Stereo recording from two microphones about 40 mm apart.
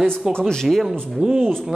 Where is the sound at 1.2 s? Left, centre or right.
Right.